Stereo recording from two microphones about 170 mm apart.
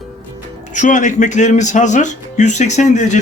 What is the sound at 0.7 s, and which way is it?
Speech, 45° left (ahead or behind).